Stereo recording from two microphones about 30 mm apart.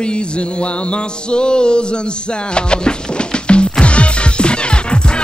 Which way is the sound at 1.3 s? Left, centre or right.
Left.